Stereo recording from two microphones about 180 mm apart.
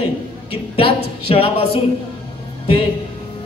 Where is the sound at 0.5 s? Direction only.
30° left (ahead or behind).